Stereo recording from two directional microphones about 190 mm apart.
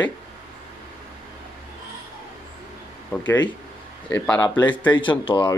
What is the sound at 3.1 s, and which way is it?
Speech, 5° left (ahead or behind).